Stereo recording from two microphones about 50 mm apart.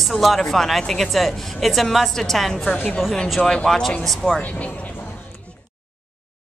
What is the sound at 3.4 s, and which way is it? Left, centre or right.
Speech, centre.